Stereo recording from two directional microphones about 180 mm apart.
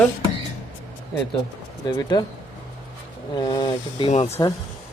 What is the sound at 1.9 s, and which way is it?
Speech, 25° left (ahead or behind).